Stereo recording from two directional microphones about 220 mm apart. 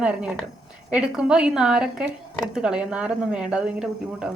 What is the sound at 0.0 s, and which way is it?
Speech, 5° right (ahead or behind).